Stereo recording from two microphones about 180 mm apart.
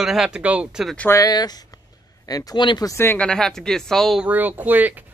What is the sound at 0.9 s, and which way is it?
Speech, 15° left (ahead or behind).